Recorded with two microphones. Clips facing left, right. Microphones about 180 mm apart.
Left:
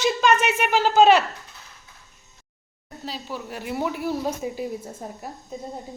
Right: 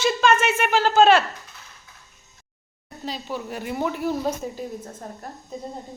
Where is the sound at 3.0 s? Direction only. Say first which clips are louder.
Right 3 dB; 5° left (ahead or behind).